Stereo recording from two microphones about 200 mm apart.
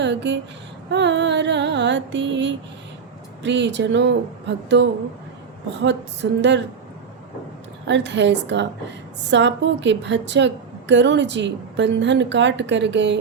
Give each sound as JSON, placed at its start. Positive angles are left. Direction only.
{"t": 0.0, "sound": "a woman's voice", "side_deg": -60}
{"t": 6.2, "sound": "a woman's voice", "side_deg": -60}
{"t": 7.9, "sound": "a woman's voice", "side_deg": -65}